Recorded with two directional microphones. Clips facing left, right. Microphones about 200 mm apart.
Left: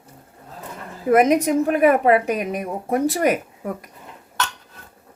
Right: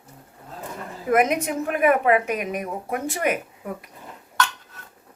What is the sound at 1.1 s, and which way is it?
A woman's voice, 35° left (ahead or behind).